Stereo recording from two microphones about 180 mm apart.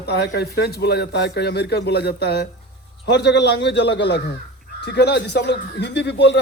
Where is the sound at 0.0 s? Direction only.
65° left (ahead or behind).